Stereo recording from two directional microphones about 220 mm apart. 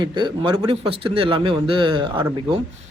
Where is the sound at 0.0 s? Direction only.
20° right (ahead or behind).